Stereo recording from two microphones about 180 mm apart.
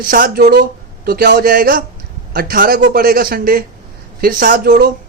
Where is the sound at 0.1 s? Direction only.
50° right (ahead or behind).